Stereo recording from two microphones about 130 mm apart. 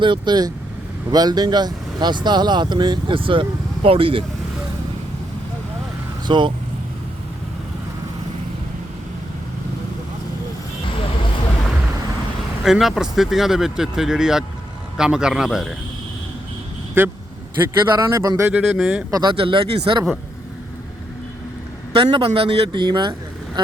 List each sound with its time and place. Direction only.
0.0 s speech: 35° right (ahead or behind)
6.2 s speech: 35° right (ahead or behind)
12.6 s speech: centre (ahead or behind)
17.0 s speech: 15° right (ahead or behind)
17.9 s speech: 25° right (ahead or behind)
18.5 s speech: 5° right (ahead or behind)
19.1 s speech: 35° right (ahead or behind)
21.9 s speech: 40° right (ahead or behind)